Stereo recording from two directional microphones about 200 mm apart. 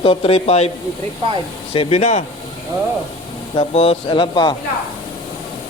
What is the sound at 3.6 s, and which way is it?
Speech, 30° left (ahead or behind).